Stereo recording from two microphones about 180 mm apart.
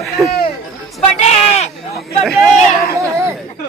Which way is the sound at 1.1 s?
40° left (ahead or behind).